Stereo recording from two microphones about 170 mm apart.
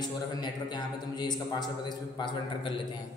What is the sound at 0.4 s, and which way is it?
A man's voice, 25° left (ahead or behind).